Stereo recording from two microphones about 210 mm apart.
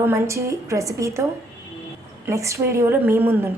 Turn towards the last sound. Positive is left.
turn(degrees=-10)  # may be behind; listen again after turning